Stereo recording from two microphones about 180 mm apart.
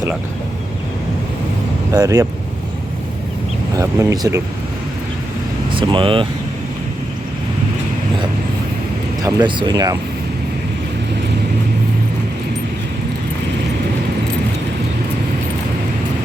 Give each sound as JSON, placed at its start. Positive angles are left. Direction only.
{"t": 1.9, "sound": "speech", "side_deg": -20}
{"t": 3.8, "sound": "speech", "side_deg": -20}
{"t": 5.7, "sound": "speech", "side_deg": -30}
{"t": 9.2, "sound": "speech", "side_deg": -25}